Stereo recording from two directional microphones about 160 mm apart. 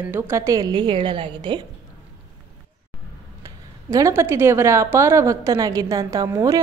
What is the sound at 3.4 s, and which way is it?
A woman's voice, 20° right (ahead or behind).